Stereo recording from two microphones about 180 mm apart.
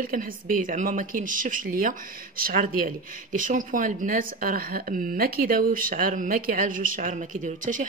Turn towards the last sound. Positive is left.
turn(degrees=-45)  # may be behind; listen again after turning